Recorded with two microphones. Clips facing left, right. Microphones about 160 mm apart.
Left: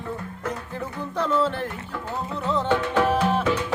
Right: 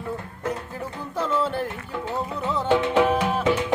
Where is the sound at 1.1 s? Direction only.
10° right (ahead or behind).